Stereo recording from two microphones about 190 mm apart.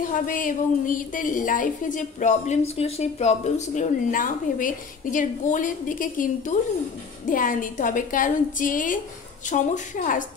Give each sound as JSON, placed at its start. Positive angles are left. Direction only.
{"t": 0.0, "sound": "a woman's voice", "side_deg": 45}